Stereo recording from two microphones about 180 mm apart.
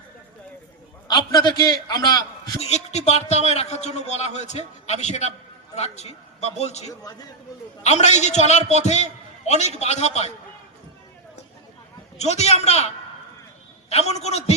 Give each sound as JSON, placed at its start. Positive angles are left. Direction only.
{"t": 1.0, "sound": "a man's voice", "side_deg": 25}
{"t": 2.6, "sound": "a man's voice", "side_deg": 35}
{"t": 12.1, "sound": "a man's voice", "side_deg": 35}
{"t": 14.1, "sound": "a man's voice", "side_deg": 35}